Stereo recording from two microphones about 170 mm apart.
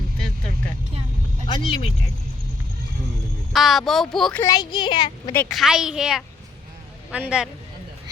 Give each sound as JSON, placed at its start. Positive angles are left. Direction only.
{"t": 1.5, "sound": "speech", "side_deg": 25}
{"t": 3.5, "sound": "speech", "side_deg": 0}
{"t": 4.4, "sound": "a woman's voice", "side_deg": 20}
{"t": 5.3, "sound": "a woman's voice", "side_deg": 10}
{"t": 5.5, "sound": "speech", "side_deg": -5}